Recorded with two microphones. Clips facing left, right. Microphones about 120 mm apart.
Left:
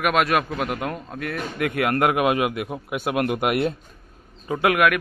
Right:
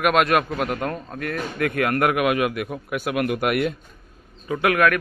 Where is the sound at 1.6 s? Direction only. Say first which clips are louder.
Even; 20° left (ahead or behind).